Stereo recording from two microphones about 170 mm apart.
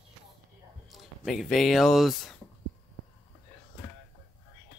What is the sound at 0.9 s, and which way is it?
Speech, centre (ahead or behind).